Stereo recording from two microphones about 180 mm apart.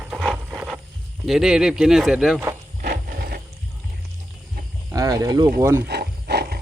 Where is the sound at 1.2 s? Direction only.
Centre (ahead or behind).